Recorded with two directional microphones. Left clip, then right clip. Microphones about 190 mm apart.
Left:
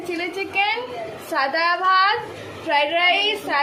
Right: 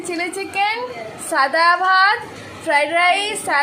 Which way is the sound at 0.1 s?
20° right (ahead or behind).